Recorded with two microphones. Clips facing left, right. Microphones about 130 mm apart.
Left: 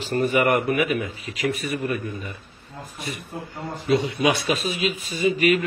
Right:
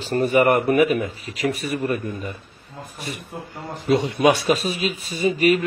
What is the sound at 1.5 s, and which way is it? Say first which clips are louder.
Speech: right 1 dB; centre (ahead or behind).